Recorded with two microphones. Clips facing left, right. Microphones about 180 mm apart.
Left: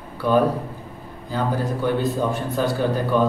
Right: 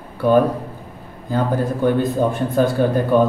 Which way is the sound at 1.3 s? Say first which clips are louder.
Right 4 dB; 50° right (ahead or behind).